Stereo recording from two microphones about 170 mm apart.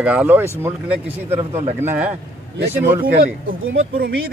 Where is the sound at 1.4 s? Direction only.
35° right (ahead or behind).